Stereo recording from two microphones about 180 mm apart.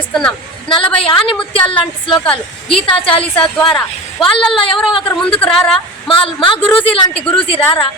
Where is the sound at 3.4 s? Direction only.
5° left (ahead or behind).